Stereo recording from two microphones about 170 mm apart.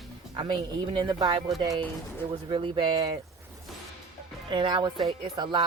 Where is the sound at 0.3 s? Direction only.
30° right (ahead or behind).